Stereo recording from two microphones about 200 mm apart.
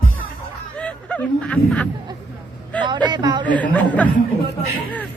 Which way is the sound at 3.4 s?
5° left (ahead or behind).